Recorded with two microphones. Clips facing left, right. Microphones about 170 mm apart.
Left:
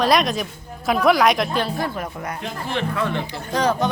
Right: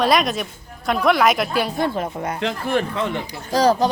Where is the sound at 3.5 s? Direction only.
35° right (ahead or behind).